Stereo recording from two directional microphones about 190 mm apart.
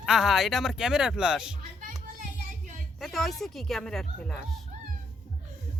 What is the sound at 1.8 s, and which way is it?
Music, 40° right (ahead or behind).